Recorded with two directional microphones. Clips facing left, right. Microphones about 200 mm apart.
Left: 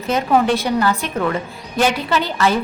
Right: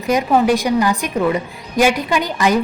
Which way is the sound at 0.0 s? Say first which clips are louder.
Right 2 dB; 15° right (ahead or behind).